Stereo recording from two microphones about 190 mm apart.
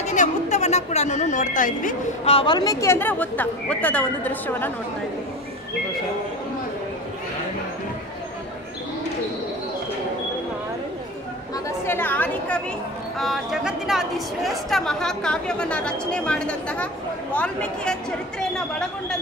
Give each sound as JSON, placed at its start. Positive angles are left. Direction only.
{"t": 0.0, "sound": "a woman's voice", "side_deg": 40}
{"t": 11.8, "sound": "a woman's voice", "side_deg": 10}
{"t": 13.2, "sound": "a woman's voice", "side_deg": 0}